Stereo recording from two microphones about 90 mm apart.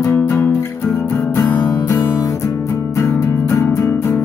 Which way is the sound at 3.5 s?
40° left (ahead or behind).